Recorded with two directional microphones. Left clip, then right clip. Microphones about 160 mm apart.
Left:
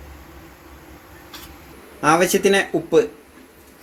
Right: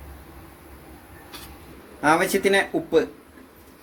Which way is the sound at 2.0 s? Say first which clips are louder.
Left 3 dB; 40° left (ahead or behind).